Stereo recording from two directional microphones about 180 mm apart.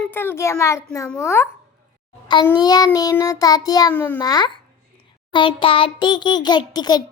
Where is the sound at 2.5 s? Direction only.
20° left (ahead or behind).